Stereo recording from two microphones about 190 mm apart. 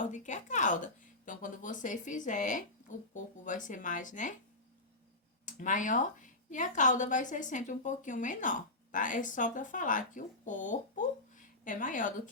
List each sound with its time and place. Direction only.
0.1 s a woman's voice: 40° left (ahead or behind)
5.5 s a woman's voice: 40° left (ahead or behind)